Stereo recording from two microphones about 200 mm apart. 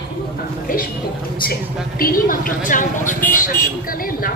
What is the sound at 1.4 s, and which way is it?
A woman's voice, 45° left (ahead or behind).